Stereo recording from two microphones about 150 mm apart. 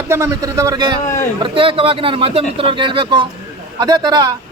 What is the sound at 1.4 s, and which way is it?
A man's voice, 35° right (ahead or behind).